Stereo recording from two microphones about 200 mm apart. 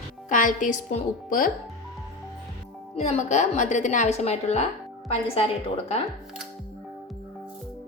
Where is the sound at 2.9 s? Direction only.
35° left (ahead or behind).